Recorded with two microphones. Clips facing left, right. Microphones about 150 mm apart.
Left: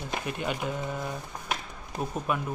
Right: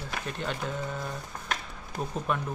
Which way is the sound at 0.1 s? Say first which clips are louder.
Left 3 dB; 10° left (ahead or behind).